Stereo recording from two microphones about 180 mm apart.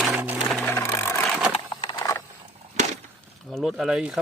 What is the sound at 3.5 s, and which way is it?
Speech, centre (ahead or behind).